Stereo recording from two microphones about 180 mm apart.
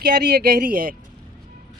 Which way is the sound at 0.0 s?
65° right (ahead or behind).